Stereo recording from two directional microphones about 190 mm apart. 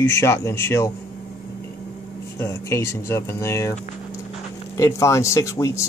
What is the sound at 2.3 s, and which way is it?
Speech, 15° left (ahead or behind).